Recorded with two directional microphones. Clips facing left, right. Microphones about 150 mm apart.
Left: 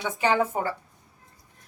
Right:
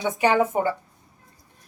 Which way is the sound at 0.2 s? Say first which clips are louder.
Right 3 dB; 15° right (ahead or behind).